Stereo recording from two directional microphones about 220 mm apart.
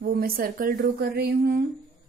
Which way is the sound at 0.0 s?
40° right (ahead or behind).